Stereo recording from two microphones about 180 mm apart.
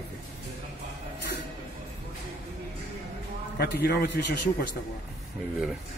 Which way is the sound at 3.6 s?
60° left (ahead or behind).